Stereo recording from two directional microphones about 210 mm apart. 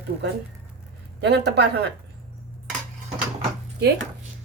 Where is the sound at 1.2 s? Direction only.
55° right (ahead or behind).